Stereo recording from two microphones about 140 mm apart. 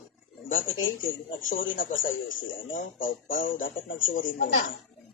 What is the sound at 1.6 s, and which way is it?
Speech, 75° left (ahead or behind).